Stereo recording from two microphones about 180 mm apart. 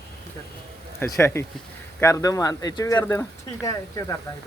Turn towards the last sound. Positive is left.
turn(degrees=20)  # may be behind; listen again after turning